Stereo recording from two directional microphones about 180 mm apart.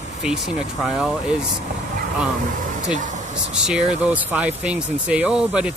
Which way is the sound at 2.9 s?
40° right (ahead or behind).